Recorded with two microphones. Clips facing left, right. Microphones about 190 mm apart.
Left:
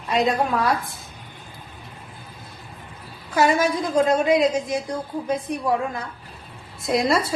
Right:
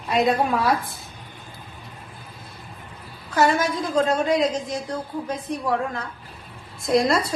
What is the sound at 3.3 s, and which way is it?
A woman's voice, 10° left (ahead or behind).